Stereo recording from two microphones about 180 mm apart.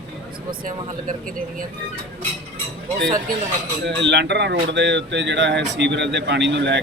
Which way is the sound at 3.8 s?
75° right (ahead or behind).